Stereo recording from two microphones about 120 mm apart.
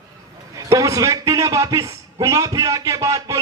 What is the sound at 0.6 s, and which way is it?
A man's voice, 25° right (ahead or behind).